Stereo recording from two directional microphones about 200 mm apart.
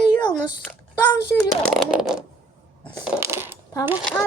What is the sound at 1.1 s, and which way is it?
Speech, 15° left (ahead or behind).